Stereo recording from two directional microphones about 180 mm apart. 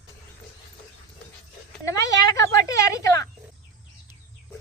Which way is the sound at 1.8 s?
15° left (ahead or behind).